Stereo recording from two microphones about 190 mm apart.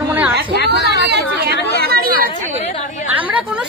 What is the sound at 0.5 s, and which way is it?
Speech, 65° left (ahead or behind).